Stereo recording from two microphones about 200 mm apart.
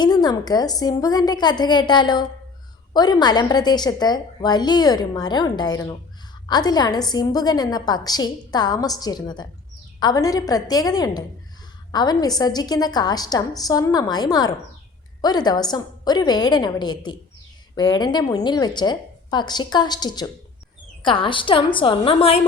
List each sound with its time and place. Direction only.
0.0 s a woman's voice: 20° left (ahead or behind)